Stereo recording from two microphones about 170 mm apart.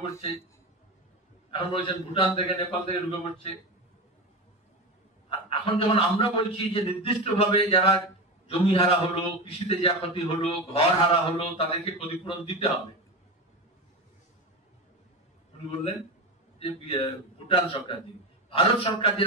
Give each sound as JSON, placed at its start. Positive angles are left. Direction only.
{"t": 1.5, "sound": "a man's voice", "side_deg": 30}
{"t": 5.3, "sound": "a man's voice", "side_deg": 35}
{"t": 16.5, "sound": "a man's voice", "side_deg": 35}